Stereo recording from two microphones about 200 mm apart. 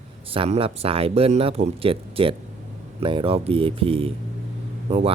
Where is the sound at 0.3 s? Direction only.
30° right (ahead or behind).